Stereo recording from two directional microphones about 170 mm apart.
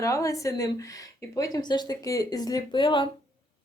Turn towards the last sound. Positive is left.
turn(degrees=30)  # may be behind; listen again after turning